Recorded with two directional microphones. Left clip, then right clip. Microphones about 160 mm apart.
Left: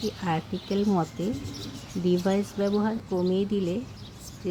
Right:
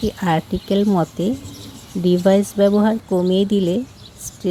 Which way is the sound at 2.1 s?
35° right (ahead or behind).